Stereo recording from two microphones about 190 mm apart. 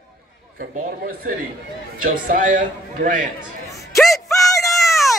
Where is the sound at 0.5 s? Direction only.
45° right (ahead or behind).